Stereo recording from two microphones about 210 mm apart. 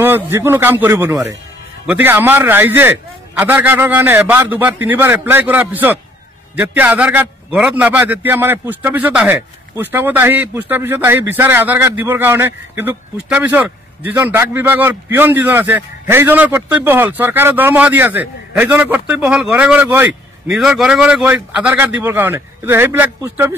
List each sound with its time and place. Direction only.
0.0 s a man's voice: 10° right (ahead or behind)